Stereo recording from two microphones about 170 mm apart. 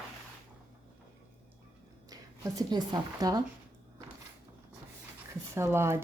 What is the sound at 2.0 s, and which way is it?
A woman's voice, 20° right (ahead or behind).